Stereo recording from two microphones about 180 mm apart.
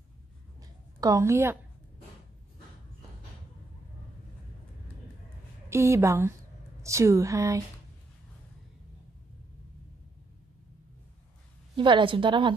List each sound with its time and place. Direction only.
0.6 s a sound: 20° right (ahead or behind)
5.7 s speech: 15° right (ahead or behind)
11.7 s a woman's voice: 25° right (ahead or behind)